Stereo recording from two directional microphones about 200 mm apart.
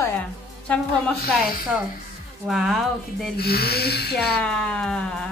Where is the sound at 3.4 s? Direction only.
50° left (ahead or behind).